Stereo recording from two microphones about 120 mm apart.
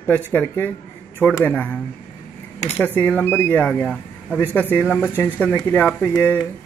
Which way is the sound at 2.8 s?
15° left (ahead or behind).